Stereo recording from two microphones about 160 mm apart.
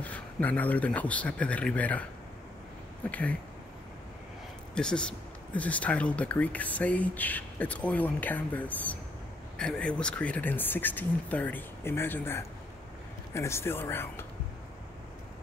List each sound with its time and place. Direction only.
0.0 s speech: 10° left (ahead or behind)
3.1 s speech: 10° left (ahead or behind)
4.7 s speech: 5° left (ahead or behind)